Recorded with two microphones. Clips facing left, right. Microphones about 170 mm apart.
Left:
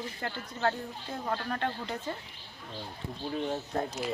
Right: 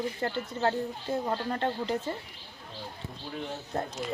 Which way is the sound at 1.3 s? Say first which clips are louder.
Right 2 dB; 20° right (ahead or behind).